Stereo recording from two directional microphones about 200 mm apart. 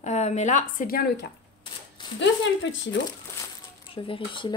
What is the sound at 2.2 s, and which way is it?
Speech, 70° left (ahead or behind).